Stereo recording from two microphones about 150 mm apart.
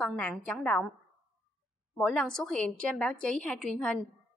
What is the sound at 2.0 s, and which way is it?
A woman's voice, 5° left (ahead or behind).